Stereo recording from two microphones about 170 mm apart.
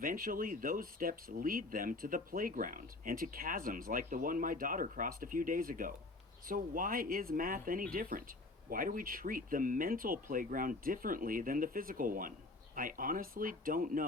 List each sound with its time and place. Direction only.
0.0 s speech: 55° right (ahead or behind)